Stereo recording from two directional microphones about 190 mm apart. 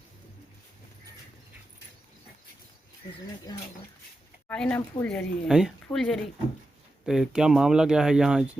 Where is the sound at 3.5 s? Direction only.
20° left (ahead or behind).